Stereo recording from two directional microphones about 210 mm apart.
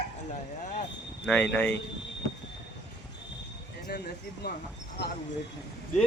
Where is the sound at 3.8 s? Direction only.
50° left (ahead or behind).